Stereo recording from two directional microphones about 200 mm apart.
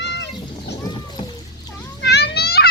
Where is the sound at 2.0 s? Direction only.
55° left (ahead or behind).